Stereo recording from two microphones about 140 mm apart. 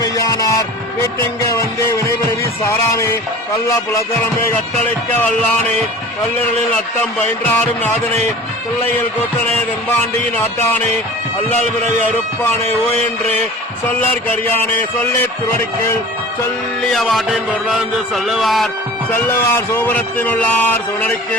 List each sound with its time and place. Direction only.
0.0 s music: 25° left (ahead or behind)
7.4 s a man's voice: 10° left (ahead or behind)
9.9 s a man's voice: 10° left (ahead or behind)
14.1 s a man's voice: 15° left (ahead or behind)
16.9 s a sound: centre (ahead or behind)
19.1 s a man's voice: 15° left (ahead or behind)